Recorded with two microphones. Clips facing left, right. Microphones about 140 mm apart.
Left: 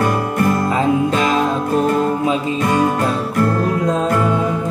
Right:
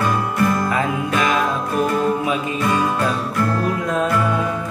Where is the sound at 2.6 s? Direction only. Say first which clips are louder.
Left 3 dB; 45° left (ahead or behind).